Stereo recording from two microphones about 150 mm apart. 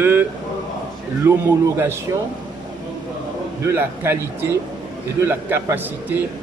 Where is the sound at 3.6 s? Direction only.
15° right (ahead or behind).